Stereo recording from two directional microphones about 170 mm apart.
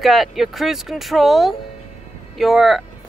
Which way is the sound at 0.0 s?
Centre (ahead or behind).